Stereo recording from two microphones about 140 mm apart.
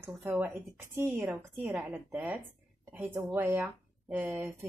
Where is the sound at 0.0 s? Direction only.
15° right (ahead or behind).